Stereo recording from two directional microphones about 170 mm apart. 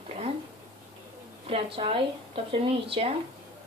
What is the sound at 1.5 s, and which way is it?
Speech, 35° right (ahead or behind).